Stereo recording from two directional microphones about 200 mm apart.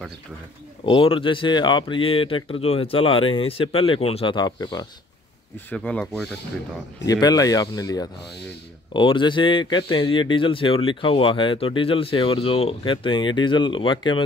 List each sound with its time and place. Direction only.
0.8 s speech: 25° left (ahead or behind)
5.7 s speech: 5° left (ahead or behind)
7.1 s speech: 20° left (ahead or behind)